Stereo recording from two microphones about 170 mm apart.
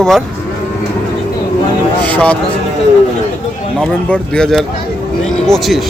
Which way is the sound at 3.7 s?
5° left (ahead or behind).